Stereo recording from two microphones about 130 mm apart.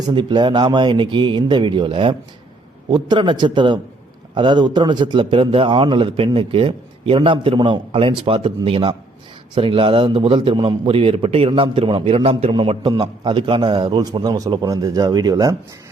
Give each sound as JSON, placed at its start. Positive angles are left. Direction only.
{"t": 0.1, "sound": "a man's voice", "side_deg": -35}
{"t": 12.8, "sound": "a man's voice", "side_deg": -35}